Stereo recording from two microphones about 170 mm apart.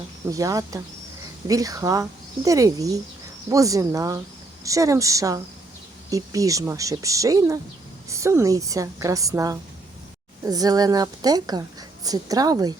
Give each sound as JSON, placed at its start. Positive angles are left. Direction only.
{"t": 0.3, "sound": "a woman's voice", "side_deg": -20}